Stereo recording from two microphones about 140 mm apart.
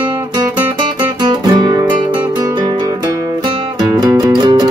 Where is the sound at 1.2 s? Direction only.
30° right (ahead or behind).